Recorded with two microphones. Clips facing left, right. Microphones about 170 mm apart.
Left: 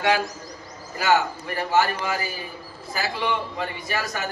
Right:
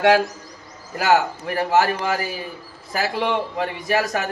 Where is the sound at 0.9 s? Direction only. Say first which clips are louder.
Right 3 dB; 70° right (ahead or behind).